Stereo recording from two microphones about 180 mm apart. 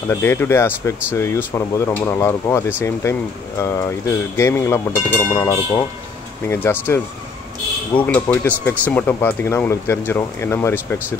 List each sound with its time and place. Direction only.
0.1 s speech: 15° left (ahead or behind)
8.0 s speech: 10° left (ahead or behind)